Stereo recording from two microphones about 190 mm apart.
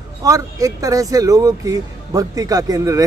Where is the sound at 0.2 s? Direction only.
20° right (ahead or behind).